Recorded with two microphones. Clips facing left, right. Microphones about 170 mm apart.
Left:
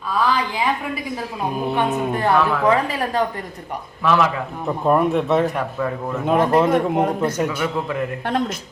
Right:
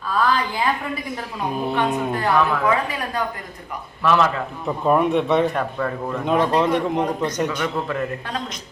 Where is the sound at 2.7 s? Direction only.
30° left (ahead or behind).